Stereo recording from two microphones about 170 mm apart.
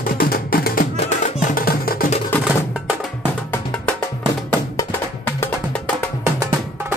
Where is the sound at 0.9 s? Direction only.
45° left (ahead or behind).